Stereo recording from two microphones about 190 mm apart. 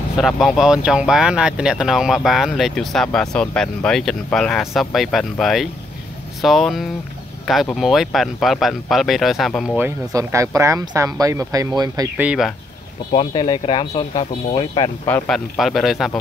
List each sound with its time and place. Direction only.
0.2 s speech: centre (ahead or behind)
9.8 s speech: 15° right (ahead or behind)
12.2 s speech: 5° right (ahead or behind)
13.1 s speech: 30° left (ahead or behind)
15.0 s speech: 5° left (ahead or behind)